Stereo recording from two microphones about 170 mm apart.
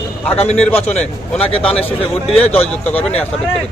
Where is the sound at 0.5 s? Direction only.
10° left (ahead or behind).